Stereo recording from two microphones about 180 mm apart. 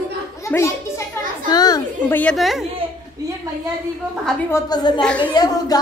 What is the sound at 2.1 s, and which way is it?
Speech, 5° left (ahead or behind).